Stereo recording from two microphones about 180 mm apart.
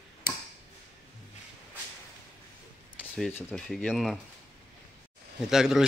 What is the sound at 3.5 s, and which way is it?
Speech, 5° left (ahead or behind).